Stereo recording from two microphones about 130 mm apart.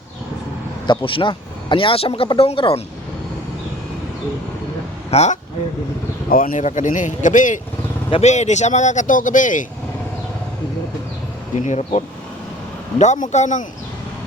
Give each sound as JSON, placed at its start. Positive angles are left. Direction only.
{"t": 0.9, "sound": "speech", "side_deg": 40}
{"t": 5.1, "sound": "speech", "side_deg": 60}
{"t": 6.2, "sound": "speech", "side_deg": 90}
{"t": 8.1, "sound": "speech", "side_deg": 60}
{"t": 11.6, "sound": "speech", "side_deg": 60}
{"t": 13.0, "sound": "speech", "side_deg": 70}